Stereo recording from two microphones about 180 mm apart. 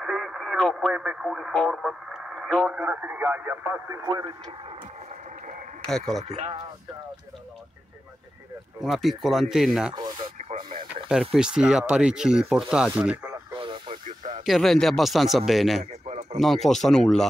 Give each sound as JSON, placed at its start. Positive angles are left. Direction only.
{"t": 0.0, "sound": "speech", "side_deg": 0}
{"t": 5.9, "sound": "speech", "side_deg": 0}
{"t": 6.2, "sound": "speech", "side_deg": -35}
{"t": 8.8, "sound": "speech", "side_deg": 0}
{"t": 9.9, "sound": "radio", "side_deg": -25}
{"t": 11.1, "sound": "speech", "side_deg": -5}
{"t": 13.3, "sound": "radio", "side_deg": -30}
{"t": 14.0, "sound": "radio", "side_deg": -45}
{"t": 14.4, "sound": "speech", "side_deg": 0}
{"t": 15.8, "sound": "a sound", "side_deg": -40}
{"t": 16.3, "sound": "speech", "side_deg": 0}